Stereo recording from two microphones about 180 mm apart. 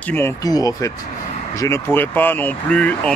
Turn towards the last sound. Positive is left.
turn(degrees=5)  # may be behind; listen again after turning